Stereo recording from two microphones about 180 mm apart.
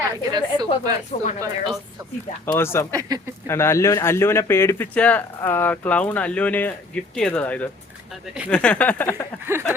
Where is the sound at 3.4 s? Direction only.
15° left (ahead or behind).